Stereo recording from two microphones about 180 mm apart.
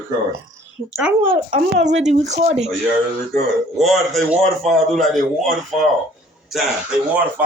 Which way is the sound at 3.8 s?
Centre (ahead or behind).